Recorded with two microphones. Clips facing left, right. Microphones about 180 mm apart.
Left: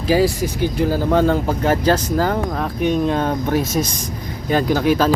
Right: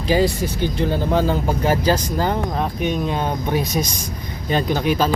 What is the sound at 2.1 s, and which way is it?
Speech, 20° right (ahead or behind).